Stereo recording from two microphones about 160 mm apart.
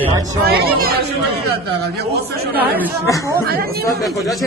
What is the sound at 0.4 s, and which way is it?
Speech, 70° right (ahead or behind).